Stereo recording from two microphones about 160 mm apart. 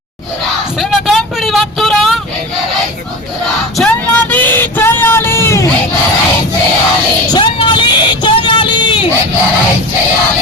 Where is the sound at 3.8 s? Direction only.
10° left (ahead or behind).